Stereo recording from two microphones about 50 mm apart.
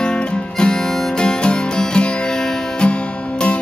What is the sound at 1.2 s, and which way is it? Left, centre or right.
Music, centre.